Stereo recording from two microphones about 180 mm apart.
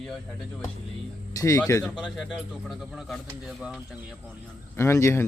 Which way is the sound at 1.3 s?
20° left (ahead or behind).